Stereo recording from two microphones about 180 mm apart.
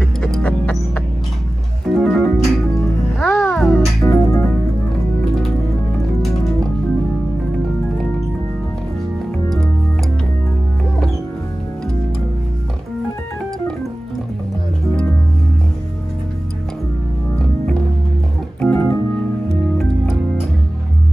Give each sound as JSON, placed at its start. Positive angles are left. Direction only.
{"t": 0.0, "sound": "music", "side_deg": 5}
{"t": 4.0, "sound": "music", "side_deg": 15}
{"t": 18.6, "sound": "organ", "side_deg": 15}